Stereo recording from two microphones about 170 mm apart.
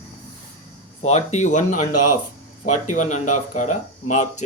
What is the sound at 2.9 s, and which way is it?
Speech, 45° left (ahead or behind).